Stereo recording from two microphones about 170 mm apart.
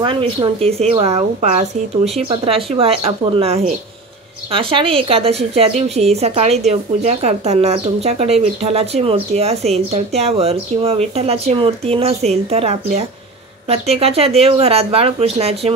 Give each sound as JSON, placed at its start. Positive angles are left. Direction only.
{"t": 0.0, "sound": "a woman's voice", "side_deg": -30}